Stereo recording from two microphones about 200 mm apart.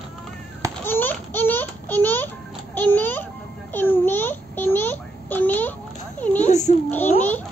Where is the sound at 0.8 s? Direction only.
10° left (ahead or behind).